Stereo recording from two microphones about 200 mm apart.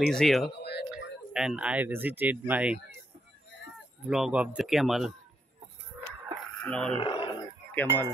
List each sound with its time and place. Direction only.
0.1 s a man's voice: centre (ahead or behind)
0.7 s a sound: 55° left (ahead or behind)
1.3 s speech: 5° right (ahead or behind)
4.1 s a man's voice: 5° right (ahead or behind)
6.4 s a sound: 5° left (ahead or behind)
6.9 s speech: 30° left (ahead or behind)
7.7 s speech: 10° left (ahead or behind)